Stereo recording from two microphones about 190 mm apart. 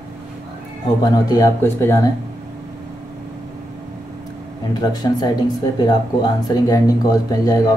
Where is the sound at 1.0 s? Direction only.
20° left (ahead or behind).